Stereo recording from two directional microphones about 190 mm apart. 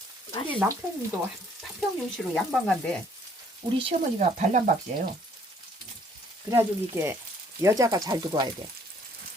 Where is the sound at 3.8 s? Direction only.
40° right (ahead or behind).